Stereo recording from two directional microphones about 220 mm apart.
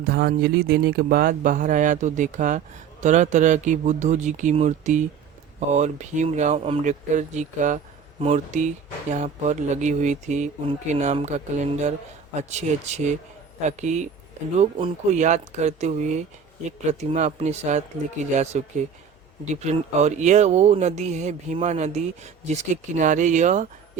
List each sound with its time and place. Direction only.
0.0 s speech: 45° right (ahead or behind)